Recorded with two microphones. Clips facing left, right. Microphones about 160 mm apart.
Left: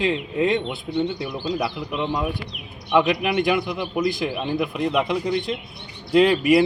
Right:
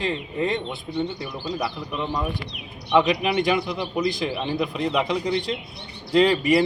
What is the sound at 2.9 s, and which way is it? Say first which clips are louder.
Speech: even; 5° left (ahead or behind).